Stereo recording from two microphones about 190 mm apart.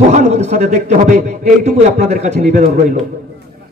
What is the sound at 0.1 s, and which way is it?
A man's voice, 35° right (ahead or behind).